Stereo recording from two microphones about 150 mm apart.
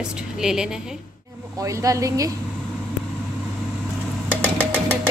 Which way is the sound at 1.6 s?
20° right (ahead or behind).